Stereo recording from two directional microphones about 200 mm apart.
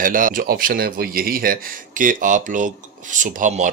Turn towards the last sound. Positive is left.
turn(degrees=-40)  # may be behind; listen again after turning